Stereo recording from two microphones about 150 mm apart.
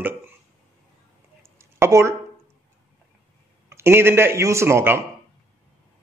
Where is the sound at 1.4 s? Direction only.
15° right (ahead or behind).